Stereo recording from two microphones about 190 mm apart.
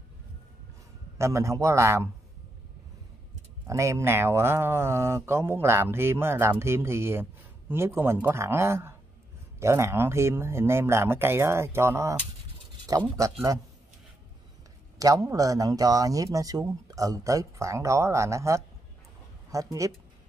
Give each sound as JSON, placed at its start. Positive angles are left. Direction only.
{"t": 1.1, "sound": "speech", "side_deg": -15}
{"t": 3.6, "sound": "speech", "side_deg": -15}
{"t": 15.0, "sound": "speech", "side_deg": -15}